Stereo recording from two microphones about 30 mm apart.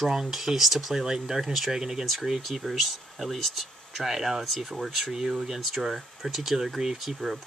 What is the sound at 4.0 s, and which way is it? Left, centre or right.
Speech, centre.